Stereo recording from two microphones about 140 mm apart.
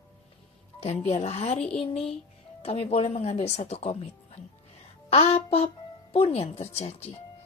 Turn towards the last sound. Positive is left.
turn(degrees=50)  # may be behind; listen again after turning